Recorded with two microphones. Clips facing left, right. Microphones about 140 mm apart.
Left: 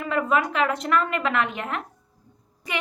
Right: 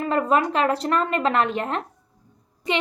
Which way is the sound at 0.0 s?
35° right (ahead or behind).